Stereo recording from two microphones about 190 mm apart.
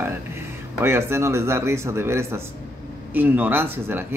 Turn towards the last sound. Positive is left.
turn(degrees=-10)  # may be behind; listen again after turning